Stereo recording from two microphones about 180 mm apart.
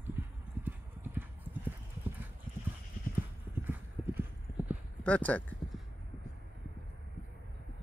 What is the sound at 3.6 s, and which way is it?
Clip-clop, 10° right (ahead or behind).